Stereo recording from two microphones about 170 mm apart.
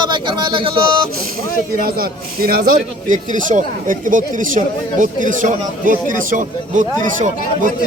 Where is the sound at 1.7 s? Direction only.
60° right (ahead or behind).